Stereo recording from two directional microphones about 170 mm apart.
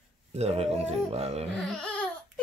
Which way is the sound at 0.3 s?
40° right (ahead or behind).